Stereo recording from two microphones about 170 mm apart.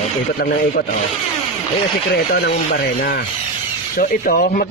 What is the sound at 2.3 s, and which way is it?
Speech, 65° left (ahead or behind).